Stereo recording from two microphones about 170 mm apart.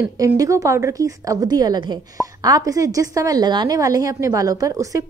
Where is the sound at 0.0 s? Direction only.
15° right (ahead or behind).